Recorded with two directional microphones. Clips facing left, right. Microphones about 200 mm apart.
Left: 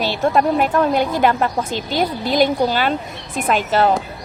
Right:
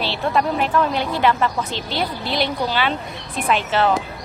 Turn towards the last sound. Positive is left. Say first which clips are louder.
# left 2 dB
turn(degrees=40)  # may be behind; listen again after turning